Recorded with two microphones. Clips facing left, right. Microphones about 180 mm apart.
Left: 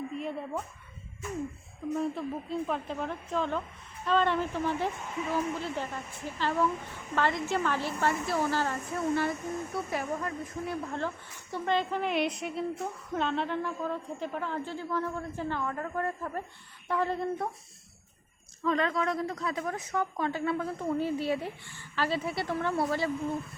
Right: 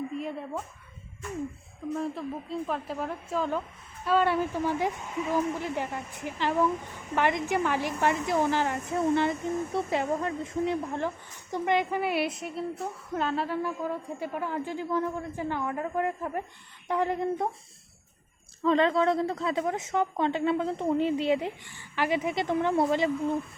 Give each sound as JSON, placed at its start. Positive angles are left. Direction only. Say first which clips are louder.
{"t": 0.2, "sound": "speech", "louder": "right 1 dB", "side_deg": 0}
{"t": 1.9, "sound": "a woman's voice", "louder": "even", "side_deg": 0}
{"t": 10.8, "sound": "a woman's voice", "louder": "right 3 dB", "side_deg": -15}
{"t": 18.6, "sound": "a woman's voice", "louder": "right 5 dB", "side_deg": -25}